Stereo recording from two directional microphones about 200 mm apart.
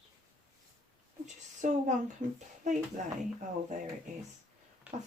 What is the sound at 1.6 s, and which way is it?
Speech, 40° right (ahead or behind).